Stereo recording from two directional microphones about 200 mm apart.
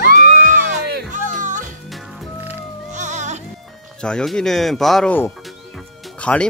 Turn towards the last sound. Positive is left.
turn(degrees=5)  # may be behind; listen again after turning